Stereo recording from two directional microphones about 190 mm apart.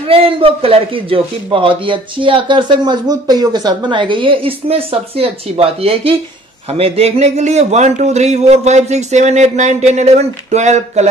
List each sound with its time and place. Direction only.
0.1 s a man's voice: 30° right (ahead or behind)